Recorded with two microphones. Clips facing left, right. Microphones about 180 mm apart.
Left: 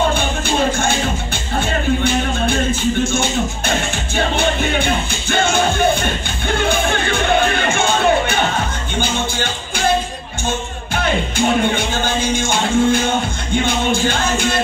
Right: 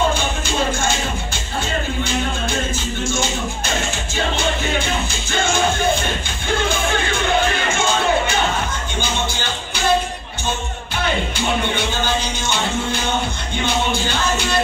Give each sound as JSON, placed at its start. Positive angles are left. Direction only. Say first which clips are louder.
{"t": 0.1, "sound": "music", "louder": "left 3 dB", "side_deg": 55}
{"t": 2.0, "sound": "music", "louder": "left 5 dB", "side_deg": 60}
{"t": 11.3, "sound": "music", "louder": "left 5 dB", "side_deg": 50}